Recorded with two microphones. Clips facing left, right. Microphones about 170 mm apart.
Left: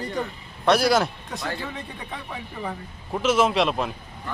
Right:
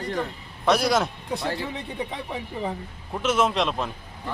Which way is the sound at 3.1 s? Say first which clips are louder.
Left 2 dB; centre (ahead or behind).